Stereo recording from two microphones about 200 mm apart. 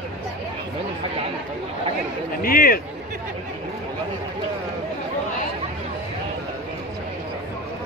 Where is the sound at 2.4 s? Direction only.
45° left (ahead or behind).